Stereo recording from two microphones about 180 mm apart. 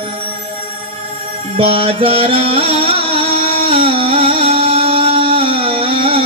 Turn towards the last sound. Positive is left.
turn(degrees=-30)  # may be behind; listen again after turning